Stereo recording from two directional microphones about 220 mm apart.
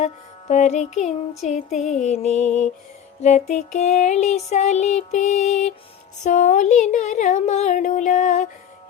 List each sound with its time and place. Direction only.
0.0 s music: 30° left (ahead or behind)